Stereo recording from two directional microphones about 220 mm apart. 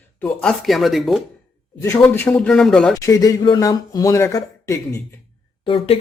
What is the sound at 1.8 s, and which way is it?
Speech, 15° left (ahead or behind).